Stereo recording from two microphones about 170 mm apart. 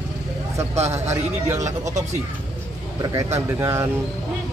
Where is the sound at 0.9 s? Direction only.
15° right (ahead or behind).